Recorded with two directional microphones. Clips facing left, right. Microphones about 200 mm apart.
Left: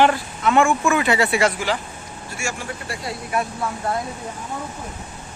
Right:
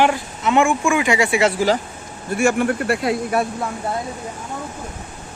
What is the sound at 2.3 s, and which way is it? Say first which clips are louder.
Speech: right 13 dB; 55° right (ahead or behind).